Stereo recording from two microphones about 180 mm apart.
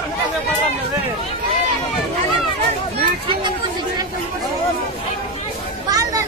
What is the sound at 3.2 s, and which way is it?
Speech, 30° right (ahead or behind).